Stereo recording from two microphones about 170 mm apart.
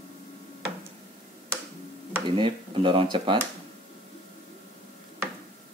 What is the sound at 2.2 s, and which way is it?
Speech, 30° right (ahead or behind).